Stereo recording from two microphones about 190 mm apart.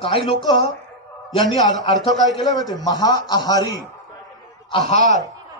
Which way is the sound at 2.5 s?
20° left (ahead or behind).